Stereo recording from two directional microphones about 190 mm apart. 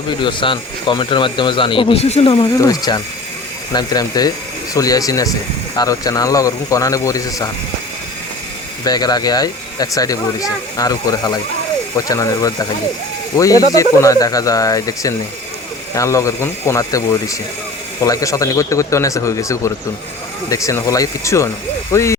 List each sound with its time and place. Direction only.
0.2 s speech: 25° left (ahead or behind)
8.8 s speech: 20° left (ahead or behind)